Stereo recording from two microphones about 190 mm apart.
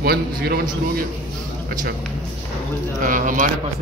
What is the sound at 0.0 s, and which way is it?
Speech, 55° right (ahead or behind).